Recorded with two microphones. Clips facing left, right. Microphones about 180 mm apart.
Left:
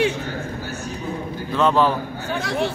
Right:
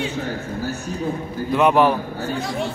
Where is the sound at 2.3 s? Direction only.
75° left (ahead or behind).